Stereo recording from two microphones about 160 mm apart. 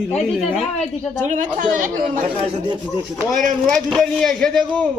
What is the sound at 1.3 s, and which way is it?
Speech, 50° right (ahead or behind).